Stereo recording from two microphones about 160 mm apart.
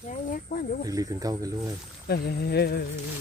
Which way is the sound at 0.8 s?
20° right (ahead or behind).